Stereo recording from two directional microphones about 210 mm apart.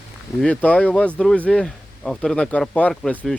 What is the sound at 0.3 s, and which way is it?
Speech, 5° left (ahead or behind).